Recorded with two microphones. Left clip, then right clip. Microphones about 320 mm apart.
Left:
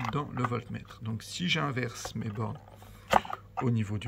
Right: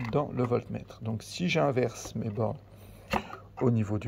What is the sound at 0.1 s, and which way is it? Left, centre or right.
Speech, centre.